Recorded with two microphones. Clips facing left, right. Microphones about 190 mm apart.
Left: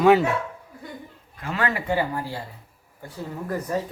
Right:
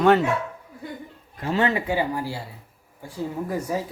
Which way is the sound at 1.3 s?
30° right (ahead or behind).